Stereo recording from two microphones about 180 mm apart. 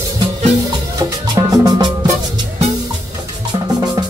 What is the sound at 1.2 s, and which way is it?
Music, 20° right (ahead or behind).